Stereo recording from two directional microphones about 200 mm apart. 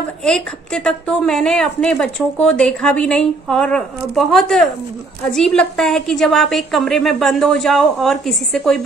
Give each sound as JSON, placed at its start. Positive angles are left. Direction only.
{"t": 0.2, "sound": "a woman's voice", "side_deg": 5}